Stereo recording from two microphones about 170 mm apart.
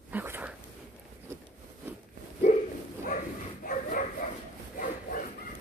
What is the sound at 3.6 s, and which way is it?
Bow-wow, 50° left (ahead or behind).